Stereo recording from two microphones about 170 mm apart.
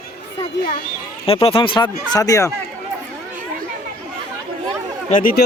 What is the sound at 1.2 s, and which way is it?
Speech, 35° left (ahead or behind).